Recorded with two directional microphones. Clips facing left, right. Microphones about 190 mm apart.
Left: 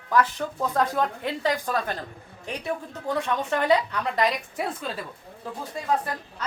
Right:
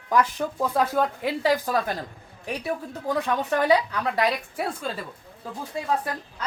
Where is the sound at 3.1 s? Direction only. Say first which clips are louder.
Right 2 dB; 5° right (ahead or behind).